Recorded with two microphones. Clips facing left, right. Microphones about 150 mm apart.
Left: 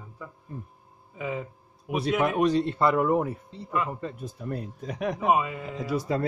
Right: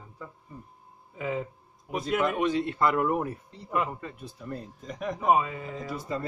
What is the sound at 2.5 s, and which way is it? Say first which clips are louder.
Speech: left 3 dB; 35° left (ahead or behind).